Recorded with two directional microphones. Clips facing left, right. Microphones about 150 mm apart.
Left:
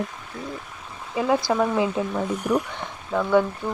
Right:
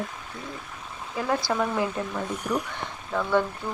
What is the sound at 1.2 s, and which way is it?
Speech, 15° left (ahead or behind).